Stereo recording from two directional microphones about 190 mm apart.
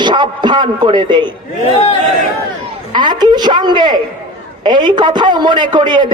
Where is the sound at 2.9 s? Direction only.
25° right (ahead or behind).